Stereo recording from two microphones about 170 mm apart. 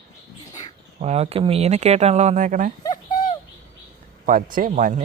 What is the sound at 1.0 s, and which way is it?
Speech, 40° right (ahead or behind).